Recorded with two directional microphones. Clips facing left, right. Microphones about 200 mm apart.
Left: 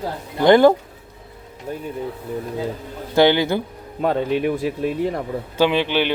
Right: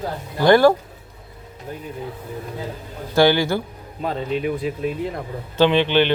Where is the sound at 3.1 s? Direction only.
20° left (ahead or behind).